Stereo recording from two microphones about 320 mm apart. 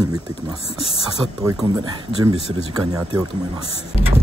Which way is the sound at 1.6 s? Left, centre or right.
Centre.